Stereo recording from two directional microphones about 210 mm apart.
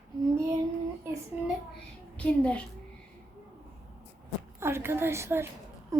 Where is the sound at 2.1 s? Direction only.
5° left (ahead or behind).